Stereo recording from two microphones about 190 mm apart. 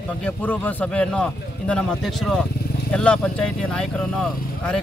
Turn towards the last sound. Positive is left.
turn(degrees=5)  # may be behind; listen again after turning